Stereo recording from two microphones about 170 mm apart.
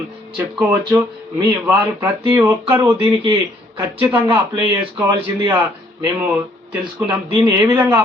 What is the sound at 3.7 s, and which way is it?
Speech, 15° right (ahead or behind).